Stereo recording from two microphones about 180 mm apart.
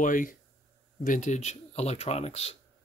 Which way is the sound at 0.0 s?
45° left (ahead or behind).